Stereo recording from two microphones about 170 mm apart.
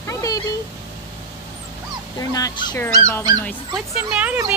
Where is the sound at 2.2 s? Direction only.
20° left (ahead or behind).